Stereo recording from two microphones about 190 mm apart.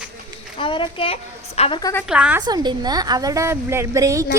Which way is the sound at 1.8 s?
15° left (ahead or behind).